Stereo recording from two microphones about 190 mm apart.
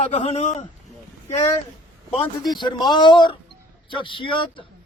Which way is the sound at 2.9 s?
25° left (ahead or behind).